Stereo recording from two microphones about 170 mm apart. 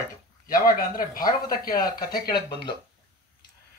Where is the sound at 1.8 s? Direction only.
25° left (ahead or behind).